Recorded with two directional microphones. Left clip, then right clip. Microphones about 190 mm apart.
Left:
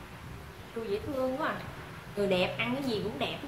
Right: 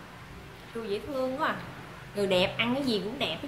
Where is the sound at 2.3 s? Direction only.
50° right (ahead or behind).